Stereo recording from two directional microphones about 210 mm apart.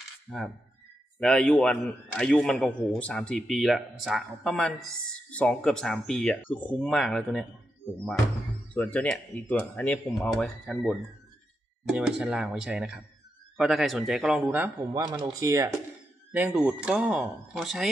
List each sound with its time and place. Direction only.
0.3 s a man's voice: centre (ahead or behind)
15.0 s a man's voice: 20° right (ahead or behind); by 17.8 s centre (ahead or behind)